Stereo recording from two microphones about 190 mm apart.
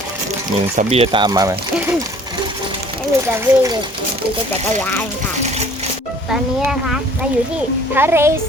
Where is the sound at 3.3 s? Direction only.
15° right (ahead or behind).